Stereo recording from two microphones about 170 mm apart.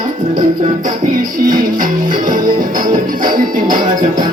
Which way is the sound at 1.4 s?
55° right (ahead or behind).